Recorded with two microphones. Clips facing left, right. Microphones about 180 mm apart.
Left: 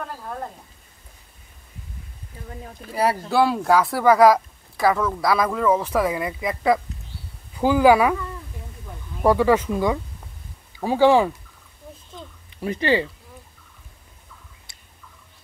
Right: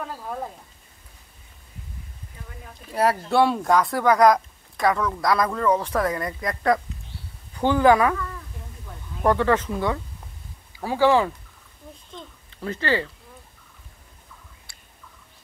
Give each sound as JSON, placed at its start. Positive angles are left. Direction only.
{"t": 0.0, "sound": "speech", "side_deg": -5}
{"t": 2.9, "sound": "speech", "side_deg": 0}
{"t": 9.2, "sound": "speech", "side_deg": 10}
{"t": 12.4, "sound": "speech", "side_deg": 15}
{"t": 14.7, "sound": "a sound", "side_deg": 20}